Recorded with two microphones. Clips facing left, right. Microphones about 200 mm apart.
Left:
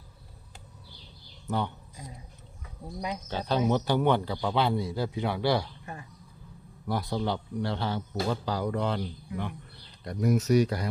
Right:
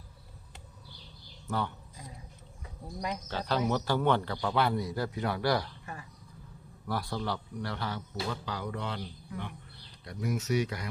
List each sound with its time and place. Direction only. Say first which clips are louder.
1.5 s a man's voice: left 3 dB; 20° left (ahead or behind)
2.8 s speech: left 2 dB; 15° left (ahead or behind)
4.8 s a man's voice: left 2 dB; 25° left (ahead or behind)
5.8 s a sound: left 2 dB; 30° left (ahead or behind)
6.8 s a man's voice: left 4 dB; 20° left (ahead or behind)
8.1 s speech: left 6 dB; 40° left (ahead or behind)
10.0 s speech: left 8 dB; 45° left (ahead or behind)